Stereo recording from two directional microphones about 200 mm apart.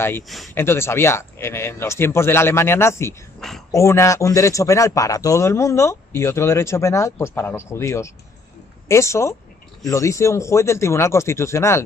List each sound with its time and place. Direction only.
0.6 s a man's voice: 10° left (ahead or behind)
3.3 s a sound: centre (ahead or behind)
3.7 s a man's voice: 15° left (ahead or behind)